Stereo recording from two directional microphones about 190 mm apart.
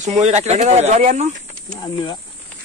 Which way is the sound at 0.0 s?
35° right (ahead or behind).